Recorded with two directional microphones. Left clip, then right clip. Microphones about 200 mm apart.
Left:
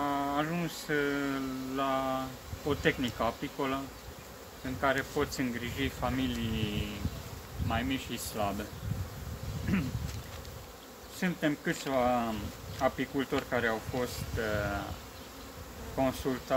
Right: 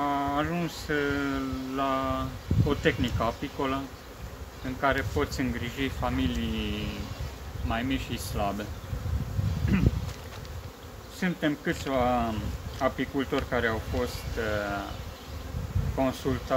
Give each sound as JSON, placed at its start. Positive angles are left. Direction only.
{"t": 0.0, "sound": "speech", "side_deg": 10}
{"t": 4.8, "sound": "speech", "side_deg": 10}
{"t": 9.7, "sound": "speech", "side_deg": 10}
{"t": 11.1, "sound": "speech", "side_deg": 10}
{"t": 16.0, "sound": "speech", "side_deg": 10}